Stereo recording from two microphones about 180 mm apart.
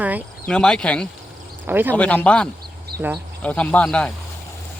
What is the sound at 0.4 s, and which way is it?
Speech, 5° left (ahead or behind).